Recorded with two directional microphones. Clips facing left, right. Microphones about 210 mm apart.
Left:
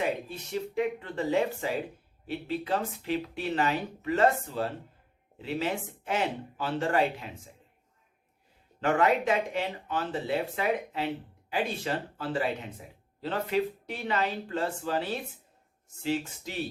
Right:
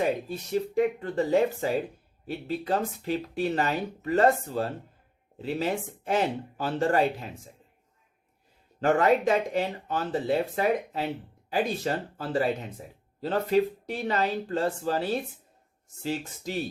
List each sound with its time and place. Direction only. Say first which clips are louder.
0.0 s speech: right 4 dB; 40° right (ahead or behind)
8.8 s speech: right 3 dB; 40° right (ahead or behind)